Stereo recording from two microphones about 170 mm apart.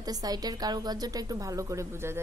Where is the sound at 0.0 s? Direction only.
20° right (ahead or behind).